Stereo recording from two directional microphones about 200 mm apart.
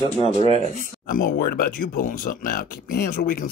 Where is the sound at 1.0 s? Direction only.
45° left (ahead or behind).